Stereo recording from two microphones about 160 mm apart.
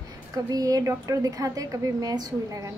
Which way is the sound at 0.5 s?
20° right (ahead or behind).